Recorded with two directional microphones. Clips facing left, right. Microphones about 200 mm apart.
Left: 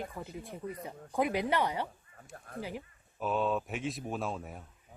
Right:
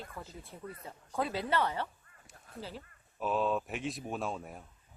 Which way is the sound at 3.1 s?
Centre (ahead or behind).